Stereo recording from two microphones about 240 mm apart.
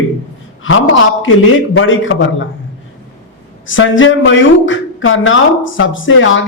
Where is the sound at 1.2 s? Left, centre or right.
Left.